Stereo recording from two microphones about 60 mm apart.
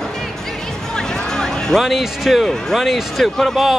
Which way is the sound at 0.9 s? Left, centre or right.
Centre.